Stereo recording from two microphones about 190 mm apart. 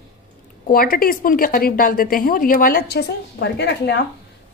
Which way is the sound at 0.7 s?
50° left (ahead or behind).